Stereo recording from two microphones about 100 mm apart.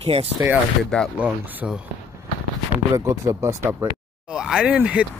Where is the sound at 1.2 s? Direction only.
15° right (ahead or behind).